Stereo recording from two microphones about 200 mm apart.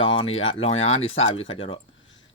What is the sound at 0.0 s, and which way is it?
Speech, 25° left (ahead or behind).